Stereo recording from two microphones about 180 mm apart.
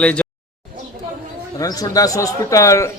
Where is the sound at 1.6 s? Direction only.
20° left (ahead or behind).